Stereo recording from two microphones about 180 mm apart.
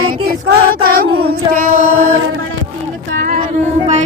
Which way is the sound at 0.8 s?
55° right (ahead or behind).